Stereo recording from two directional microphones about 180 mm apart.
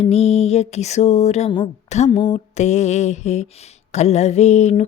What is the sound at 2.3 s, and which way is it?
Speech, 40° left (ahead or behind).